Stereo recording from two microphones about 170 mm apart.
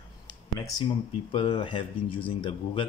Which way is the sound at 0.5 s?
20° left (ahead or behind).